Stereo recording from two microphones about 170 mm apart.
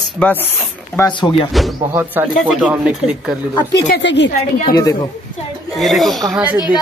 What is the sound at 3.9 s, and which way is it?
Speech, 90° left.